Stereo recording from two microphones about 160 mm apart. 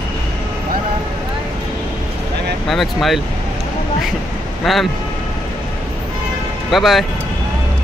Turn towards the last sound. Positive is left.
turn(degrees=0)  # may be behind; listen again after turning